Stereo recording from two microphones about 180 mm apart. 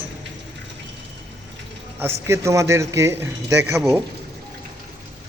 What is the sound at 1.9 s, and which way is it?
A man's voice, 15° right (ahead or behind).